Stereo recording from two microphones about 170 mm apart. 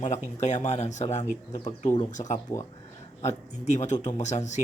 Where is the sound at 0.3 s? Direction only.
40° left (ahead or behind).